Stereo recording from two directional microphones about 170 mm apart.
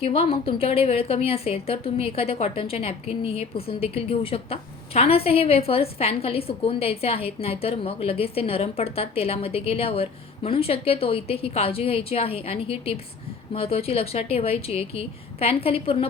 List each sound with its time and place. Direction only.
0.0 s a woman's voice: 35° left (ahead or behind)